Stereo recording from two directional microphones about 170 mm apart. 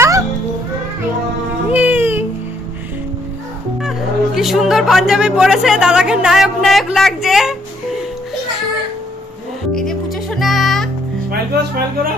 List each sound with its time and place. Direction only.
1.7 s a sound: 10° right (ahead or behind)
4.4 s speech: centre (ahead or behind)
9.8 s music: centre (ahead or behind)
11.2 s speech: 65° right (ahead or behind)